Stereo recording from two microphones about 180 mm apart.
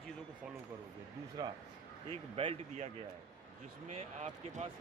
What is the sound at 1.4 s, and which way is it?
Speech, 20° right (ahead or behind).